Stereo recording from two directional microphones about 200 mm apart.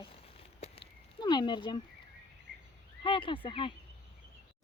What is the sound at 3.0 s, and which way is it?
Speech, 25° left (ahead or behind).